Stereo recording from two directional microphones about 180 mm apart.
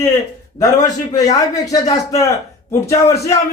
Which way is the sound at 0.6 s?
20° left (ahead or behind).